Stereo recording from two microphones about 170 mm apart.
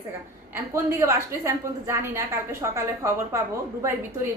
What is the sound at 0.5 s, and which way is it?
A woman's voice, 15° right (ahead or behind).